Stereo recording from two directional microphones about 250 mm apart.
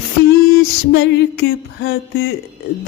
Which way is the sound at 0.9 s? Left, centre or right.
Left.